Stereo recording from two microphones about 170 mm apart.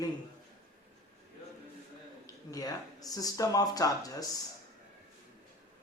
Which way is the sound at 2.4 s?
20° left (ahead or behind).